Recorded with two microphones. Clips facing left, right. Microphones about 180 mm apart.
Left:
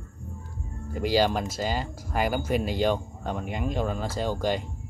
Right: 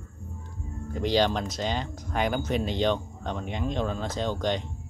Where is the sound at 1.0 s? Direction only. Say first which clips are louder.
Left 1 dB; 5° left (ahead or behind).